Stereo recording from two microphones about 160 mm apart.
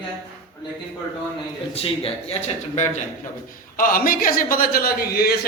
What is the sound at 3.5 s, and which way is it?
A man's voice, 65° left (ahead or behind).